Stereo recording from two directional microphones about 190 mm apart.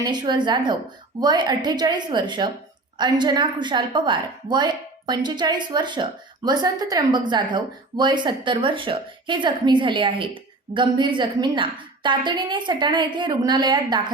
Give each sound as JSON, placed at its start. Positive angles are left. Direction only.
{"t": 0.0, "sound": "speech", "side_deg": -20}